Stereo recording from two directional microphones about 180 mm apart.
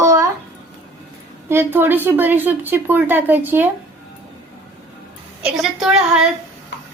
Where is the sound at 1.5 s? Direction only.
10° right (ahead or behind).